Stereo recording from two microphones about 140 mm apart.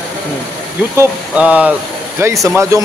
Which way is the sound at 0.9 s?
10° right (ahead or behind).